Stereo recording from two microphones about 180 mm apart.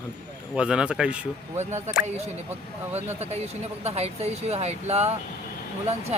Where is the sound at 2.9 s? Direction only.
35° right (ahead or behind).